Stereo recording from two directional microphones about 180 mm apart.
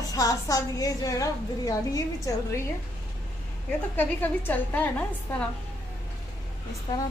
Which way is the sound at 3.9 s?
10° left (ahead or behind).